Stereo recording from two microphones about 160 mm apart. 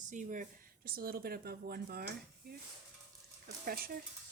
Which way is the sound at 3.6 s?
65° right (ahead or behind).